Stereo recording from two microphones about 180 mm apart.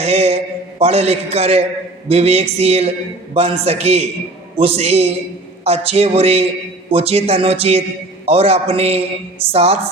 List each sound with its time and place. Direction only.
0.0 s speech: 35° right (ahead or behind)